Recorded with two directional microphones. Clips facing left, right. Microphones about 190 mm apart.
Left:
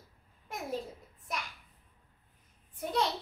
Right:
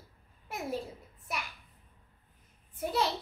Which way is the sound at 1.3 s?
5° right (ahead or behind).